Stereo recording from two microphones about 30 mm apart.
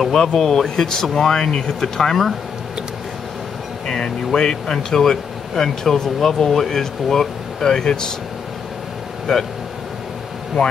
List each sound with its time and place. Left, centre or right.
0.1 s speech: centre
0.4 s speech: centre
4.4 s speech: left
9.3 s speech: centre